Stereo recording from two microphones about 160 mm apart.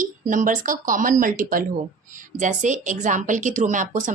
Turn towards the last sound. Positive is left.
turn(degrees=-55)  # may be behind; listen again after turning